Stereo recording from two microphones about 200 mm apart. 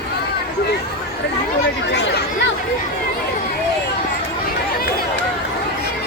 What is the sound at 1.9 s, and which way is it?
Chatter, 55° left (ahead or behind).